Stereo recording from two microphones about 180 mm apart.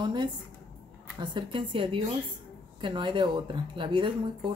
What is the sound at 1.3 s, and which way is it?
A woman's voice, 30° right (ahead or behind).